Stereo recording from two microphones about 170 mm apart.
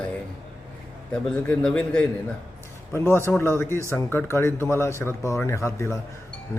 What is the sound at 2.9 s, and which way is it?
Speech, 15° left (ahead or behind).